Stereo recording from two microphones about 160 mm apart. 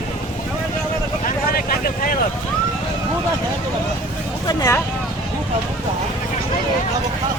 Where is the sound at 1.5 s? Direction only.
60° left (ahead or behind).